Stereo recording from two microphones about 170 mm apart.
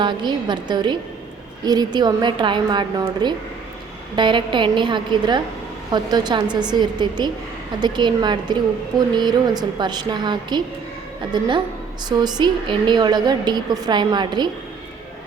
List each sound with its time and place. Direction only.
0.0 s a woman's voice: 25° right (ahead or behind)